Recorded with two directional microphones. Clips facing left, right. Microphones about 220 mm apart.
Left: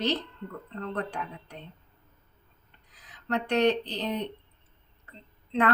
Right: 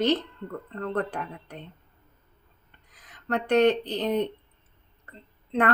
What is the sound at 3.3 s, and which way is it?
Speech, 50° right (ahead or behind).